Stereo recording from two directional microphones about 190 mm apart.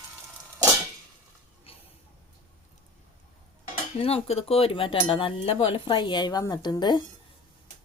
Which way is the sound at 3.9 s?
30° left (ahead or behind).